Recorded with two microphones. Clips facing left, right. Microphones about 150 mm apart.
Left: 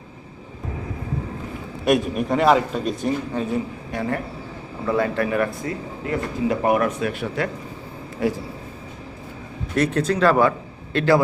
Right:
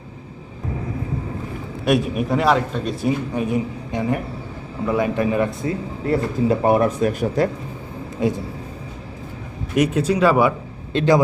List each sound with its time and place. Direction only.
1.8 s a man's voice: centre (ahead or behind); by 7.5 s 40° right (ahead or behind)
8.2 s a man's voice: 20° right (ahead or behind)
9.7 s a man's voice: 10° right (ahead or behind)